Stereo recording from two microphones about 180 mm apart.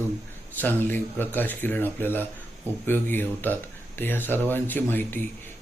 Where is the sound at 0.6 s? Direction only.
10° left (ahead or behind).